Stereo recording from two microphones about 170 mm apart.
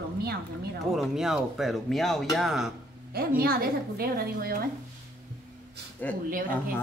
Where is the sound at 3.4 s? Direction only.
65° right (ahead or behind).